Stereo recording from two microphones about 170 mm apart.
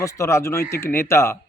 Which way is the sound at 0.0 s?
15° left (ahead or behind).